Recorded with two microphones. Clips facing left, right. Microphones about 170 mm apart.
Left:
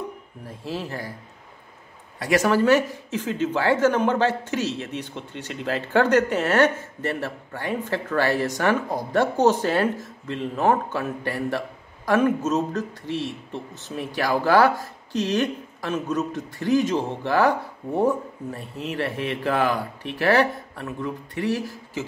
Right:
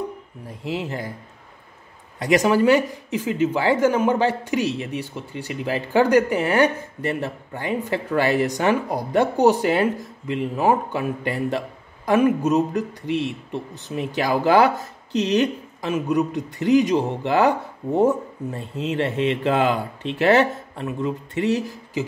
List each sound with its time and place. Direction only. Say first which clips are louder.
0.5 s speech: right 3 dB; 15° right (ahead or behind)
2.1 s speech: right 2 dB; 15° right (ahead or behind)